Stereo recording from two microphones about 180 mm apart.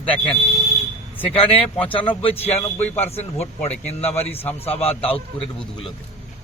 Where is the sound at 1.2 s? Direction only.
30° left (ahead or behind).